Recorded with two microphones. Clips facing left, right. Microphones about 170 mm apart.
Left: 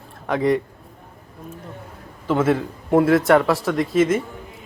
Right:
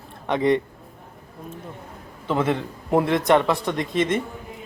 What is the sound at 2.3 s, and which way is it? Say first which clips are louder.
A man's voice: left 4 dB; 5° left (ahead or behind).